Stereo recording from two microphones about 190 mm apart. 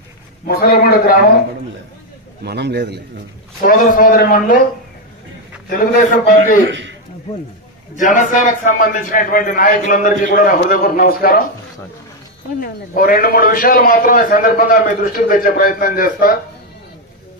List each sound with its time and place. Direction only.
0.5 s a man's voice: 50° left (ahead or behind)
2.4 s a man's voice: 60° right (ahead or behind)
3.6 s a man's voice: 45° left (ahead or behind)
5.7 s a man's voice: 45° left (ahead or behind)
6.7 s a man's voice: 70° right (ahead or behind)
7.9 s a man's voice: 40° left (ahead or behind)
12.5 s a man's voice: 50° left (ahead or behind)